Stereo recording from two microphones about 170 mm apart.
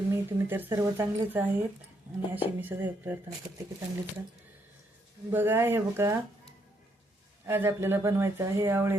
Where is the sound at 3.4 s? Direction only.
25° right (ahead or behind).